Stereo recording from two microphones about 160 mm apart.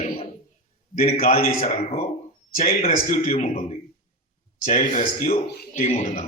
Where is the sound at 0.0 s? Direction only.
35° left (ahead or behind).